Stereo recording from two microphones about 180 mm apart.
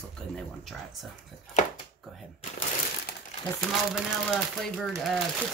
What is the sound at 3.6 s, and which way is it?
Speech, centre (ahead or behind).